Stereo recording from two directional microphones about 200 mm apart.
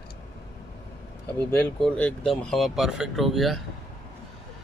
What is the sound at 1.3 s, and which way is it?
Speech, 5° left (ahead or behind).